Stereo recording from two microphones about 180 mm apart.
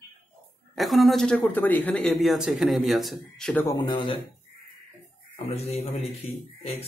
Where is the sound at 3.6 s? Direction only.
25° left (ahead or behind).